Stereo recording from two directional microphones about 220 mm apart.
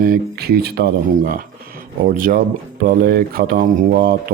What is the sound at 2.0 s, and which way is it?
Speech, 40° right (ahead or behind).